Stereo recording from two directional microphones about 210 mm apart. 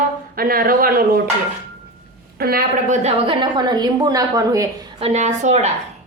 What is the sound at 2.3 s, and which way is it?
Speech, 45° right (ahead or behind).